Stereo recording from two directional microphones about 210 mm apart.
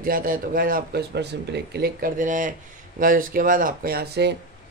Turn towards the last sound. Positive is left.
turn(degrees=-50)  # may be behind; listen again after turning